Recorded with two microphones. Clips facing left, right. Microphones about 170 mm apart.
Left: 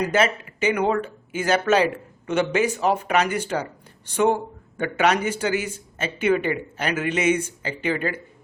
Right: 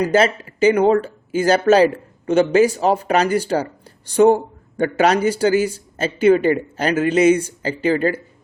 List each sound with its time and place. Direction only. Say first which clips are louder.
0.0 s speech: right 5 dB; 35° right (ahead or behind)